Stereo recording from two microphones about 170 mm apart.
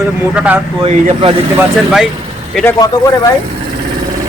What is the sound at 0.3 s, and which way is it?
Speech, 10° right (ahead or behind).